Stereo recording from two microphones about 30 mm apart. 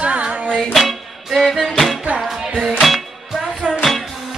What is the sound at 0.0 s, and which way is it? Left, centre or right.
Music, right.